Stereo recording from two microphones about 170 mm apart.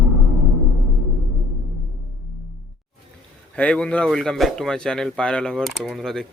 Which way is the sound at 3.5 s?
5° left (ahead or behind).